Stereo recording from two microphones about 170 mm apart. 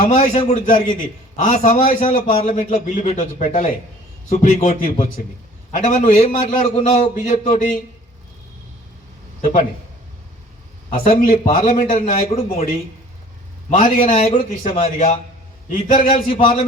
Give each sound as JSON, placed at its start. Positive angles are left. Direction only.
{"t": 0.0, "sound": "a man's voice", "side_deg": 50}
{"t": 2.5, "sound": "a man's voice", "side_deg": 50}
{"t": 5.7, "sound": "a man's voice", "side_deg": 40}
{"t": 9.4, "sound": "a man's voice", "side_deg": 50}
{"t": 10.9, "sound": "a man's voice", "side_deg": 55}